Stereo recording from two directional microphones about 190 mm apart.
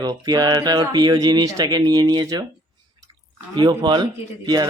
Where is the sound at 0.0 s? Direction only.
20° right (ahead or behind).